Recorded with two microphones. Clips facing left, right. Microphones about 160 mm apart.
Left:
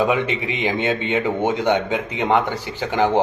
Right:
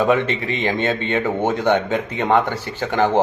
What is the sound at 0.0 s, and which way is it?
Speech, 10° left (ahead or behind).